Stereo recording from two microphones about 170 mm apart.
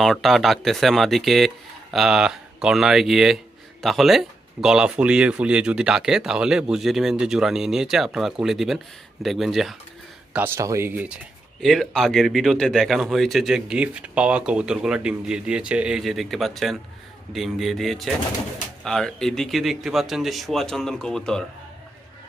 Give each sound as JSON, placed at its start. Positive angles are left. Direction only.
{"t": 0.0, "sound": "speech", "side_deg": 0}
{"t": 10.3, "sound": "speech", "side_deg": -15}
{"t": 11.6, "sound": "speech", "side_deg": 0}